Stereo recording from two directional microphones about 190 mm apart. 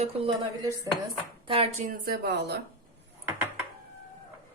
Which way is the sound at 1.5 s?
35° right (ahead or behind).